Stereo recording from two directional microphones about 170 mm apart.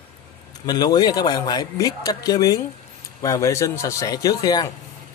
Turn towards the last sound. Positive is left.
turn(degrees=25)  # may be behind; listen again after turning